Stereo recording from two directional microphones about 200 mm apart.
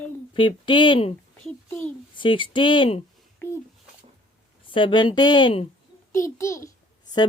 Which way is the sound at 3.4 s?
10° left (ahead or behind).